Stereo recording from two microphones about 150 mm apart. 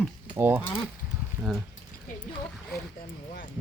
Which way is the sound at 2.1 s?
60° left (ahead or behind).